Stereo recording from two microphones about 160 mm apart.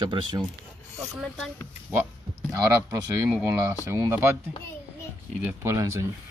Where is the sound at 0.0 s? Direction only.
30° right (ahead or behind).